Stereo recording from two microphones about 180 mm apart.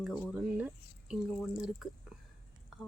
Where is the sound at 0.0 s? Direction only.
5° right (ahead or behind).